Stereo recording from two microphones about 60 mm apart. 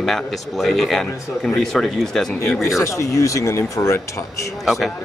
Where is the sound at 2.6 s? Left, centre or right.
Left.